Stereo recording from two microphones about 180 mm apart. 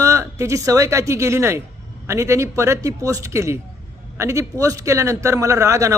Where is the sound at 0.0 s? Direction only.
15° right (ahead or behind).